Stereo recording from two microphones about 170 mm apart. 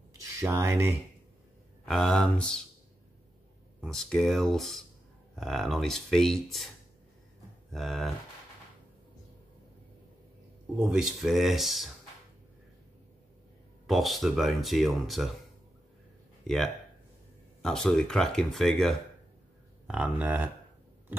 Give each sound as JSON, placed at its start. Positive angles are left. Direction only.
{"t": 0.2, "sound": "speech", "side_deg": -20}
{"t": 1.9, "sound": "speech", "side_deg": 5}
{"t": 3.8, "sound": "speech", "side_deg": 5}
{"t": 7.7, "sound": "speech", "side_deg": 0}
{"t": 10.8, "sound": "speech", "side_deg": -5}
{"t": 13.8, "sound": "speech", "side_deg": 0}
{"t": 16.4, "sound": "speech", "side_deg": 0}
{"t": 19.9, "sound": "speech", "side_deg": -10}